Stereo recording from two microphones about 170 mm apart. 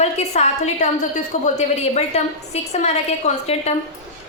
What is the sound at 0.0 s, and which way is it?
A woman's voice, 40° left (ahead or behind).